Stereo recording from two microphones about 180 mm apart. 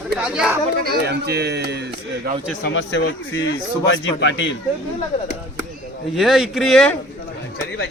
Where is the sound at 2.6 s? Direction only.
90° left.